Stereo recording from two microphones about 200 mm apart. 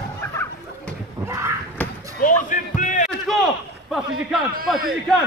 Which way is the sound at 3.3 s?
Centre (ahead or behind).